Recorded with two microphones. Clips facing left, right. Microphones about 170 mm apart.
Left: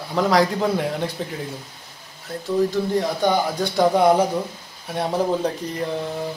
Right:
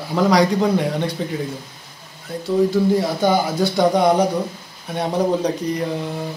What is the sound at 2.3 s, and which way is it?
Speech, centre (ahead or behind).